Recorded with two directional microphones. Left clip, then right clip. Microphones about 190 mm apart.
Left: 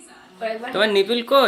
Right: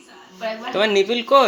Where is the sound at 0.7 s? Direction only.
5° left (ahead or behind).